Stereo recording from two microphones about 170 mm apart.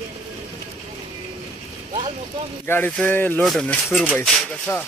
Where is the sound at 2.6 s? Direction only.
10° left (ahead or behind).